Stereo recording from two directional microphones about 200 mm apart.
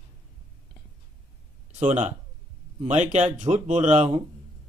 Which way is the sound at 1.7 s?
35° right (ahead or behind).